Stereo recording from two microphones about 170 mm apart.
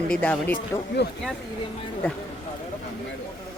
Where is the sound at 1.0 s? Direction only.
80° left.